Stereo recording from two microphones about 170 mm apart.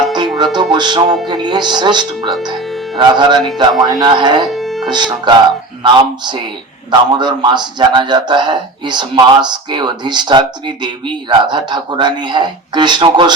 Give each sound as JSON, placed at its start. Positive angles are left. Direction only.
{"t": 0.2, "sound": "music", "side_deg": -25}
{"t": 1.3, "sound": "a man's voice", "side_deg": -25}
{"t": 4.5, "sound": "music", "side_deg": 0}
{"t": 4.9, "sound": "a man's voice", "side_deg": -25}